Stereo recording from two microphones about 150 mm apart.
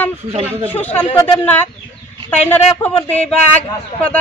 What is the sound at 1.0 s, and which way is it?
Speech, 40° left (ahead or behind).